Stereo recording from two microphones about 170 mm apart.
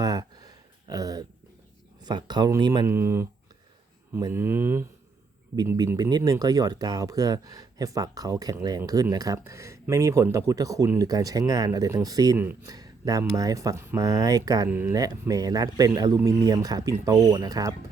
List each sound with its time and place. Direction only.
0.0 s a sound: 20° right (ahead or behind)
2.0 s speech: 25° right (ahead or behind)
2.9 s speech: 15° right (ahead or behind)
5.9 s speech: 25° right (ahead or behind)
14.7 s speech: 10° right (ahead or behind)